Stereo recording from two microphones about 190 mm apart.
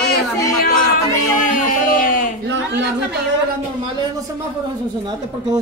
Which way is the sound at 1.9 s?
45° left (ahead or behind).